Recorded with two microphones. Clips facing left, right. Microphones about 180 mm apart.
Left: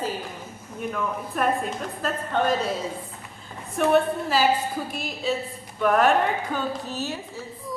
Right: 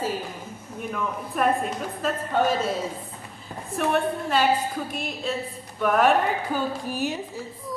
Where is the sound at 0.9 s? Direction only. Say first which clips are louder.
Even; centre (ahead or behind).